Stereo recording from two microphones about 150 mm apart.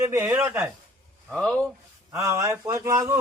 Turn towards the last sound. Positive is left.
turn(degrees=-20)  # may be behind; listen again after turning